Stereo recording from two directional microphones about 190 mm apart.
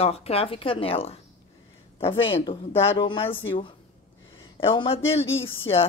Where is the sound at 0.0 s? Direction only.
30° left (ahead or behind).